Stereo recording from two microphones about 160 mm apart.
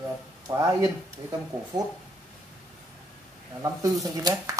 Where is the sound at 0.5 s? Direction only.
20° right (ahead or behind).